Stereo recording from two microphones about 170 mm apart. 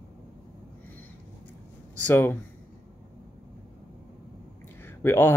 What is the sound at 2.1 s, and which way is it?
Speech, 15° left (ahead or behind).